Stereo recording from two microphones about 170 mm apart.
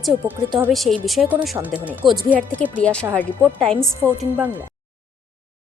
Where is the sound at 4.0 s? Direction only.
10° right (ahead or behind).